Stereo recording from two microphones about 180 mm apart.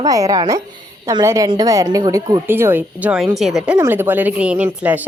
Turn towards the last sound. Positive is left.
turn(degrees=-10)  # may be behind; listen again after turning